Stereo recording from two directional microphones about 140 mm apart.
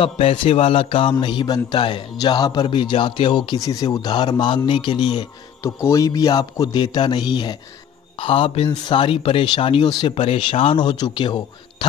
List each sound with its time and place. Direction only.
0.0 s a man's voice: 45° left (ahead or behind)